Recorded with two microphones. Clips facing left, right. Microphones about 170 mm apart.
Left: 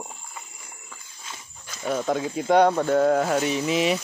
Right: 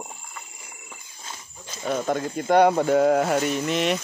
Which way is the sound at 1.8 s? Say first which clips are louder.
Even; centre (ahead or behind).